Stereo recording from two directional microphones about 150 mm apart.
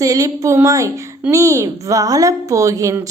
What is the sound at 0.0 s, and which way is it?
A woman's voice, 25° right (ahead or behind).